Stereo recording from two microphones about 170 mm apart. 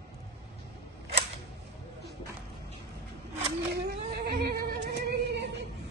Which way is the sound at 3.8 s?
70° right (ahead or behind).